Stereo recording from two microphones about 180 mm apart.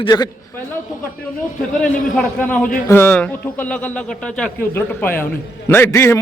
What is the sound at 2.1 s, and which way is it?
A man's voice, 10° left (ahead or behind).